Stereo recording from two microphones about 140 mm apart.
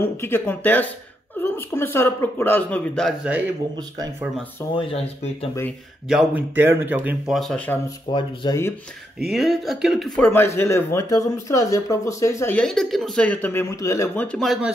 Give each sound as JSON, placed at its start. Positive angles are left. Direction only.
{"t": 0.0, "sound": "speech", "side_deg": 15}
{"t": 4.7, "sound": "speech", "side_deg": 45}
{"t": 6.0, "sound": "speech", "side_deg": -5}
{"t": 6.5, "sound": "speech", "side_deg": -15}
{"t": 7.3, "sound": "speech", "side_deg": 5}
{"t": 8.1, "sound": "speech", "side_deg": 35}
{"t": 9.3, "sound": "speech", "side_deg": 0}
{"t": 12.5, "sound": "speech", "side_deg": 5}
{"t": 14.2, "sound": "speech", "side_deg": 5}